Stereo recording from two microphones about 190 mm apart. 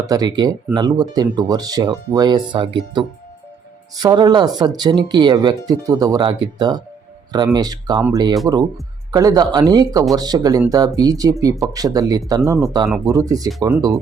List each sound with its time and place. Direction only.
0.0 s speech: 20° right (ahead or behind)
3.9 s speech: 20° right (ahead or behind)